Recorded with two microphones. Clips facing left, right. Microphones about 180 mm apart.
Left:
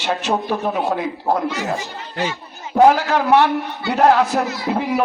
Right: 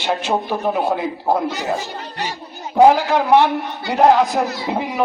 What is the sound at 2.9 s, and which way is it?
A man's voice, 15° right (ahead or behind).